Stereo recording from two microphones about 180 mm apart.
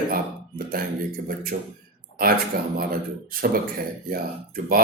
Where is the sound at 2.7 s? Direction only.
55° right (ahead or behind).